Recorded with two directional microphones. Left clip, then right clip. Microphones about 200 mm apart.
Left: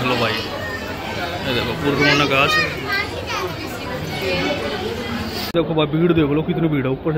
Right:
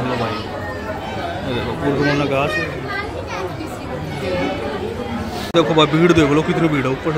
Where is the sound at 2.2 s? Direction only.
5° right (ahead or behind).